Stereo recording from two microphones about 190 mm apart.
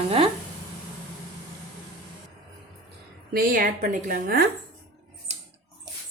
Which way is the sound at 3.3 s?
50° right (ahead or behind).